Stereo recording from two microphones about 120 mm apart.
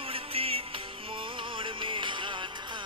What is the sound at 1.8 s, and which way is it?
Music, 45° right (ahead or behind).